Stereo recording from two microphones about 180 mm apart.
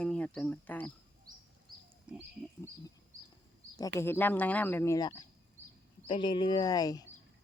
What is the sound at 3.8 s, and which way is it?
Speech, 15° left (ahead or behind).